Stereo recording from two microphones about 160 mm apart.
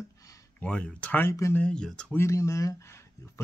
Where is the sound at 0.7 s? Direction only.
5° left (ahead or behind).